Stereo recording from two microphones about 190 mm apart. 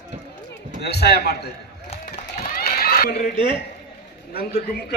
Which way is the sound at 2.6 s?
50° left (ahead or behind).